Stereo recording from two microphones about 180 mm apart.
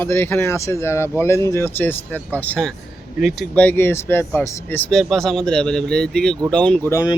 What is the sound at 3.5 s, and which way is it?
Speech, 10° left (ahead or behind).